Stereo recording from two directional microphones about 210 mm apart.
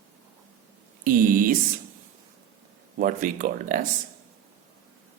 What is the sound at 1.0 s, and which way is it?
Speech, 40° right (ahead or behind).